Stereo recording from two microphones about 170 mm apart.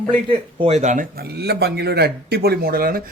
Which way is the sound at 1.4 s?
70° right (ahead or behind).